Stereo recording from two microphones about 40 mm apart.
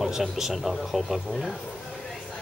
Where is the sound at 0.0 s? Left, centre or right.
Centre.